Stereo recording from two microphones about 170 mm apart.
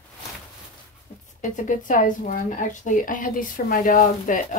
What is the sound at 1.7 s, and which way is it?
A woman's voice, 50° left (ahead or behind).